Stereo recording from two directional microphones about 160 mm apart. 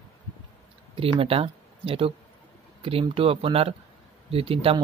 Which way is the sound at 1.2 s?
35° right (ahead or behind).